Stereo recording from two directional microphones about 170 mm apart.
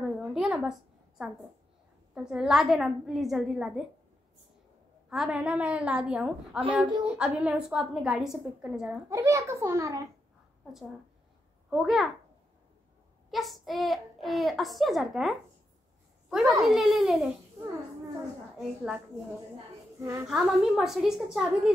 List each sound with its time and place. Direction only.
0.0 s a sound: 5° right (ahead or behind)
2.1 s a child's voice: 5° right (ahead or behind)
5.1 s a woman's voice: 5° right (ahead or behind)
9.1 s a woman's voice: 15° right (ahead or behind)
10.6 s a woman's voice: centre (ahead or behind)
13.3 s a child's voice: centre (ahead or behind)
20.0 s a woman's voice: 15° right (ahead or behind)
20.2 s a child's voice: centre (ahead or behind)